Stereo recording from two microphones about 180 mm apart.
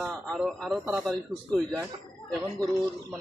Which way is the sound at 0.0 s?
Centre (ahead or behind).